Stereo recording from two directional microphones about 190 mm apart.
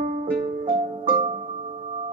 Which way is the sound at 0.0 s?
40° right (ahead or behind).